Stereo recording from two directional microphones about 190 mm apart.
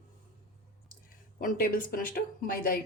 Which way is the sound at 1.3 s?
45° left (ahead or behind).